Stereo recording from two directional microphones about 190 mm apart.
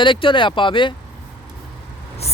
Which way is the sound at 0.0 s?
25° left (ahead or behind).